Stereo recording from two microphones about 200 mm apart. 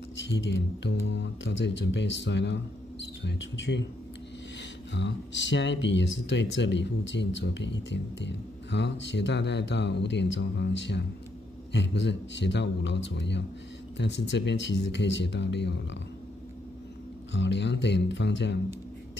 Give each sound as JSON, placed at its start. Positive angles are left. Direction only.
{"t": 0.3, "sound": "speech", "side_deg": 60}
{"t": 4.9, "sound": "speech", "side_deg": 60}
{"t": 17.3, "sound": "speech", "side_deg": 60}